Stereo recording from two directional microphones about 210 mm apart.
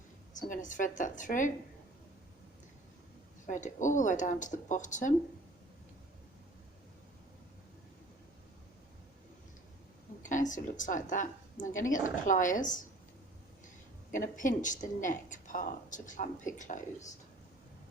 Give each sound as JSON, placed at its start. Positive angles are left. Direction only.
{"t": 0.3, "sound": "a woman's voice", "side_deg": 40}
{"t": 3.4, "sound": "a woman's voice", "side_deg": 35}
{"t": 10.2, "sound": "a woman's voice", "side_deg": 35}
{"t": 14.1, "sound": "a woman's voice", "side_deg": 40}